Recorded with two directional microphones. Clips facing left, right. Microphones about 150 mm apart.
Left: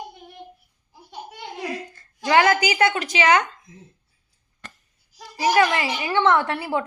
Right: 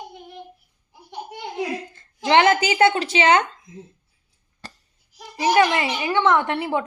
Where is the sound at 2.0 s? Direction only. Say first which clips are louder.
Right 1 dB; 25° right (ahead or behind).